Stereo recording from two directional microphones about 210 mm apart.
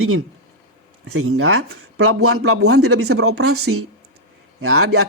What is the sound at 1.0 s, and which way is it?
Speech, 90° right.